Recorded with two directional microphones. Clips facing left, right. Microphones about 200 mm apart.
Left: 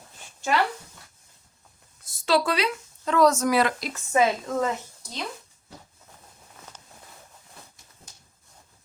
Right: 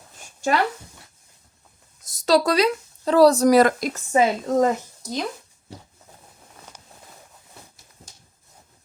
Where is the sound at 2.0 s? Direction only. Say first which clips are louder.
Right 4 dB; 40° right (ahead or behind).